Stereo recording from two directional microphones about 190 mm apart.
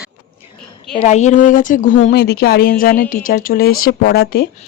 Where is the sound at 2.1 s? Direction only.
55° left (ahead or behind).